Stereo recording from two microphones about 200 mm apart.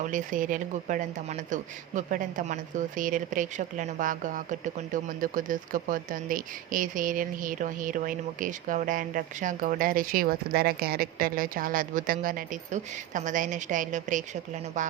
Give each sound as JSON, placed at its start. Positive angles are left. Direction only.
{"t": 0.0, "sound": "speech", "side_deg": -40}